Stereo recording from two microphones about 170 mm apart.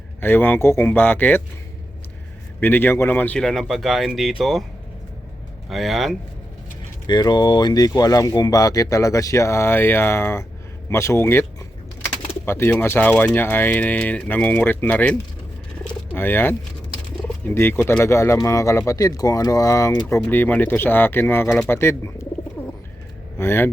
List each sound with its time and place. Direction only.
0.2 s speech: 10° left (ahead or behind)
2.6 s speech: 10° left (ahead or behind)
5.6 s speech: centre (ahead or behind)
7.1 s speech: 25° left (ahead or behind)
12.5 s speech: 15° left (ahead or behind)
16.1 s speech: 10° left (ahead or behind)
22.6 s bird: 5° left (ahead or behind)
23.4 s speech: 15° left (ahead or behind)